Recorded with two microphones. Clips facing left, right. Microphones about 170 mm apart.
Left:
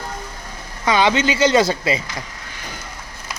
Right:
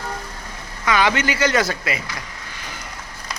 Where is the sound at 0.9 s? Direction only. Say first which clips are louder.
Left 3 dB; 25° left (ahead or behind).